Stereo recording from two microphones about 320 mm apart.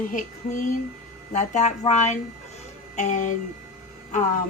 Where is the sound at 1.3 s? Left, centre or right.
Left.